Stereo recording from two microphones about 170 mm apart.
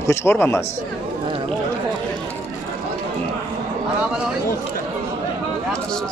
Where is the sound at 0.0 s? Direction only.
15° left (ahead or behind).